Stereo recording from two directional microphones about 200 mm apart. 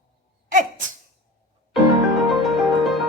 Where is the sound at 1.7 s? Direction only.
Centre (ahead or behind).